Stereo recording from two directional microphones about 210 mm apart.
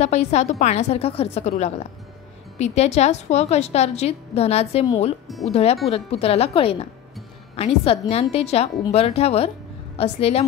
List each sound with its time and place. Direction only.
0.0 s a woman's voice: 30° left (ahead or behind)